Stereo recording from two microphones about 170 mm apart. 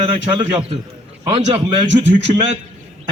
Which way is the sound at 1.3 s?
40° right (ahead or behind).